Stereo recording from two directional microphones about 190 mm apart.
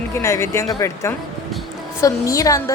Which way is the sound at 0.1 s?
15° left (ahead or behind).